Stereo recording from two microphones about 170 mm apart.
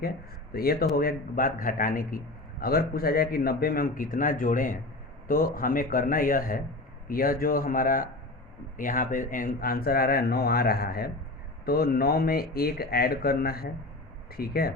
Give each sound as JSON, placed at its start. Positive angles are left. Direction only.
{"t": 0.5, "sound": "a man's voice", "side_deg": 65}